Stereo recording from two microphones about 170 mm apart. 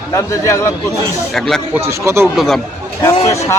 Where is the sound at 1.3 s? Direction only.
Centre (ahead or behind).